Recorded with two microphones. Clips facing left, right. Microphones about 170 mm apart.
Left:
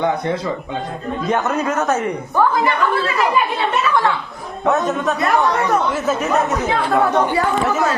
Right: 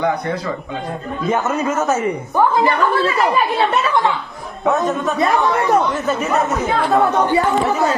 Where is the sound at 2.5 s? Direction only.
30° right (ahead or behind).